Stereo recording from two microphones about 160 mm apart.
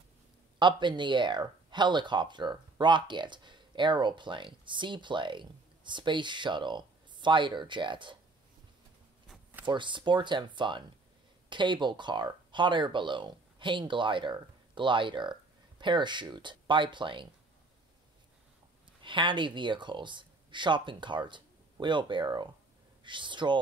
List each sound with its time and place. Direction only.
0.6 s speech: 30° right (ahead or behind)
9.7 s speech: 30° right (ahead or behind)
19.0 s speech: 30° right (ahead or behind)